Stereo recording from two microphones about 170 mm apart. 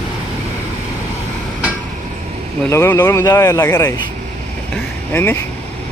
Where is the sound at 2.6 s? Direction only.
15° left (ahead or behind).